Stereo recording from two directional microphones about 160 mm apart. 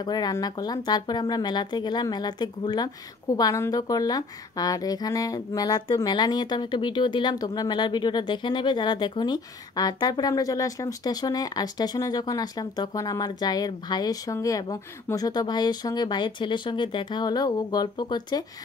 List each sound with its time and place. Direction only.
0.0 s speech: 25° left (ahead or behind)